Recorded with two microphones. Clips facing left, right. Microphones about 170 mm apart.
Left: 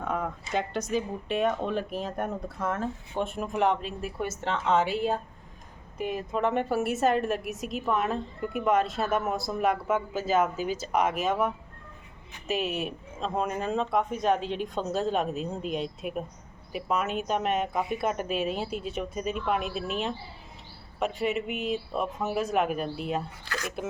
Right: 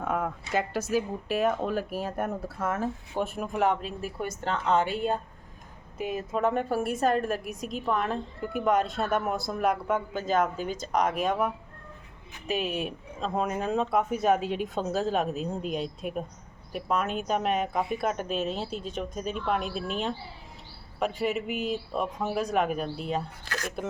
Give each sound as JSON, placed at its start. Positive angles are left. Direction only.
{"t": 0.0, "sound": "a woman's voice", "side_deg": -5}
{"t": 23.5, "sound": "speech", "side_deg": -45}